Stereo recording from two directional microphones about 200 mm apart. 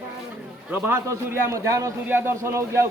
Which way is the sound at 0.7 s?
10° right (ahead or behind).